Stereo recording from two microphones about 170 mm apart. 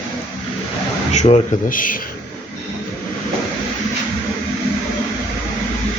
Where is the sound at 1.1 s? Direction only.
40° left (ahead or behind).